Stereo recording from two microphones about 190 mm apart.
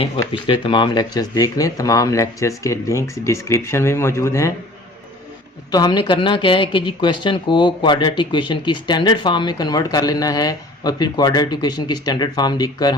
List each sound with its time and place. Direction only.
0.3 s speech: 25° left (ahead or behind)
5.7 s speech: 20° left (ahead or behind)